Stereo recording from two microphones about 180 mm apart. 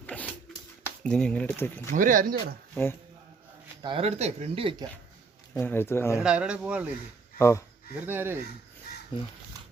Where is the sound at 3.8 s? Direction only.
30° right (ahead or behind).